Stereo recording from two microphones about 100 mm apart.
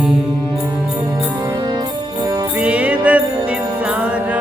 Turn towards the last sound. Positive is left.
turn(degrees=-15)  # may be behind; listen again after turning